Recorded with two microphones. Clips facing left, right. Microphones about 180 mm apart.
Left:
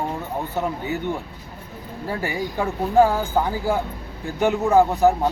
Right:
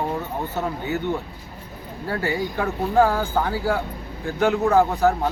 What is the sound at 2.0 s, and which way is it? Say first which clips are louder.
Speech: right 2 dB; 15° left (ahead or behind).